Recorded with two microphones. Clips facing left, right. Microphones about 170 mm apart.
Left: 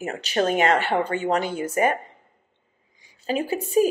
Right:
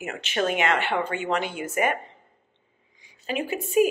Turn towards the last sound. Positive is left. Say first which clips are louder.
# left 1 dB
turn(degrees=35)  # may be behind; listen again after turning